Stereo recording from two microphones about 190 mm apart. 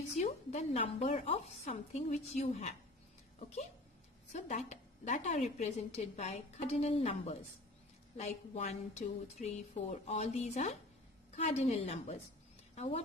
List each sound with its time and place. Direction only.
0.2 s a woman's voice: 35° left (ahead or behind)
4.3 s a woman's voice: 40° left (ahead or behind)